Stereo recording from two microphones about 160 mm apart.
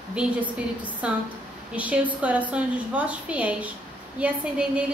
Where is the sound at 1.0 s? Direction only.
5° right (ahead or behind).